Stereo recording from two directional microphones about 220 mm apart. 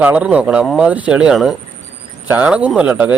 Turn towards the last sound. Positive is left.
turn(degrees=-5)  # may be behind; listen again after turning